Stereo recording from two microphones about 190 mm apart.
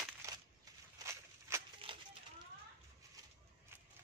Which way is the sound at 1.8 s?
30° right (ahead or behind).